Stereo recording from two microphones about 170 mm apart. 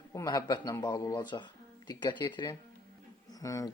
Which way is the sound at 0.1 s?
20° left (ahead or behind).